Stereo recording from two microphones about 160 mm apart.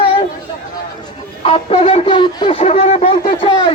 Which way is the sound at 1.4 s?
40° left (ahead or behind).